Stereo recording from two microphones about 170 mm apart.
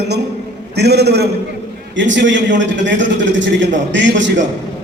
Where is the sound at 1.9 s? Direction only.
90° right.